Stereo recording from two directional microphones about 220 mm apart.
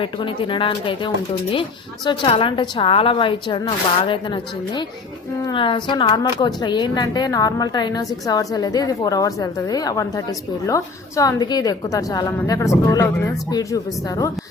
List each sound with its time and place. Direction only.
0.0 s speech: 25° left (ahead or behind)